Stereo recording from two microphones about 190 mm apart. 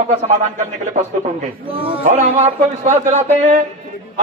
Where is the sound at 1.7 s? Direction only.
30° right (ahead or behind).